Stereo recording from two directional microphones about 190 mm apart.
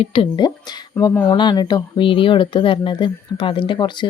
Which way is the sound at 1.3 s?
20° left (ahead or behind).